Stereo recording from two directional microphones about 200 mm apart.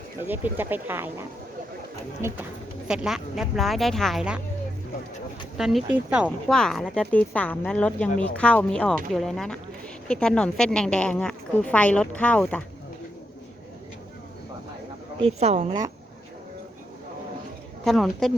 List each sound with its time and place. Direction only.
0.3 s speech: 10° right (ahead or behind)
2.8 s a woman's voice: 5° right (ahead or behind)
5.5 s a woman's voice: centre (ahead or behind)
15.2 s speech: 30° right (ahead or behind)
17.8 s a woman's voice: centre (ahead or behind)